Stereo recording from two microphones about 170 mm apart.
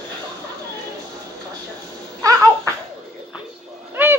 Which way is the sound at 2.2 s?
20° right (ahead or behind).